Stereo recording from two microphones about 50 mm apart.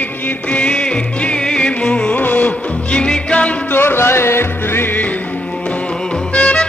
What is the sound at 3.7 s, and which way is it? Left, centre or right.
Music, left.